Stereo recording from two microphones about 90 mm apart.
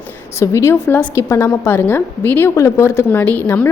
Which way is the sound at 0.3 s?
30° left (ahead or behind).